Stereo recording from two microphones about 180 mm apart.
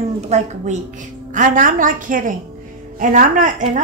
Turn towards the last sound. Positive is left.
turn(degrees=-45)  # may be behind; listen again after turning